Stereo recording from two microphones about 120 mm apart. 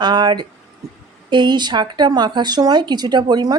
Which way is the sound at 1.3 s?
40° right (ahead or behind).